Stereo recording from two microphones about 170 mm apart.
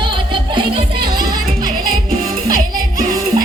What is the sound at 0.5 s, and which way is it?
Music, 30° right (ahead or behind).